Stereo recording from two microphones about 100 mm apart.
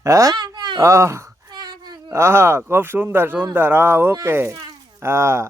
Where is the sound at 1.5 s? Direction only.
45° right (ahead or behind).